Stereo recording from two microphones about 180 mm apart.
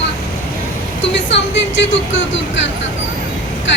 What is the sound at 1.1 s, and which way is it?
Speech, 85° left.